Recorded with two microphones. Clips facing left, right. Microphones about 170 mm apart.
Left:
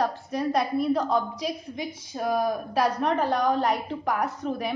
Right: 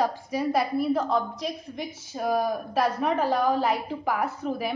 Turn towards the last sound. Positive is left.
turn(degrees=-5)  # may be behind; listen again after turning